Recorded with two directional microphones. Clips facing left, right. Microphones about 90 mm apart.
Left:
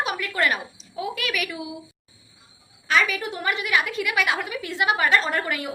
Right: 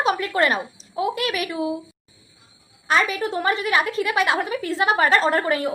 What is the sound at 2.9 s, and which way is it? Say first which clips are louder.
A woman's voice: right 2 dB; 35° right (ahead or behind).